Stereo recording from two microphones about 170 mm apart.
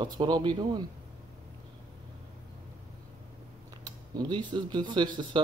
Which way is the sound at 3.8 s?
25° right (ahead or behind).